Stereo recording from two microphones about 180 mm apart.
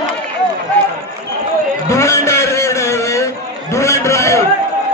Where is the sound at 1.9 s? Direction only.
15° left (ahead or behind).